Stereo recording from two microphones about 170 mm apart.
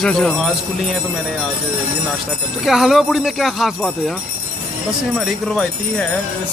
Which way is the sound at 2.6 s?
Centre (ahead or behind).